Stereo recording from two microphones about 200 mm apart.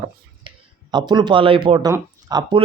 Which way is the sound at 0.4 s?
20° right (ahead or behind).